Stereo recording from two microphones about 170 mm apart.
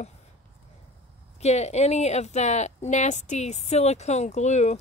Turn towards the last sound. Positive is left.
turn(degrees=40)  # may be behind; listen again after turning